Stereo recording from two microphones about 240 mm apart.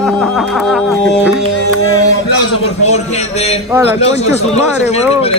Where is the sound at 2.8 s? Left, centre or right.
Left.